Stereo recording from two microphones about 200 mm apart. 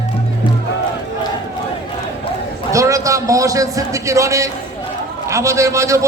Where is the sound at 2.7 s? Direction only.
15° right (ahead or behind).